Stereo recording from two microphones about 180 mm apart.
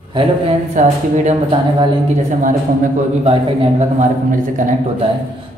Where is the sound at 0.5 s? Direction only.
40° right (ahead or behind).